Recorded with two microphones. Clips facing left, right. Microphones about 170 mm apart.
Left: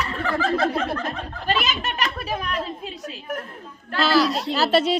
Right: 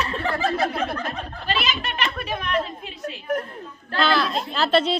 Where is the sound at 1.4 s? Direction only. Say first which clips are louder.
Left 2 dB; 45° left (ahead or behind).